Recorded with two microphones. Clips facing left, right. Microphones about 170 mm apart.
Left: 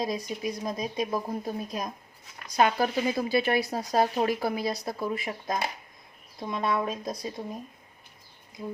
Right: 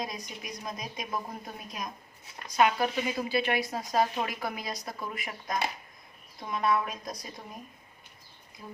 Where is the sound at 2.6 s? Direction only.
35° left (ahead or behind).